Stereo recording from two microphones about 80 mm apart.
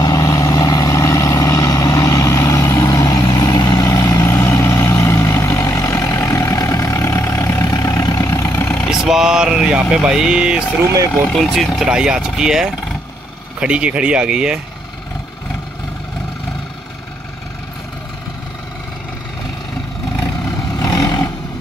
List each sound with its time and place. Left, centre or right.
0.0 s vehicle: left
7.6 s vehicle: left
8.5 s vehicle: left
9.1 s speech: centre
11.2 s speech: centre
20.8 s a sound: left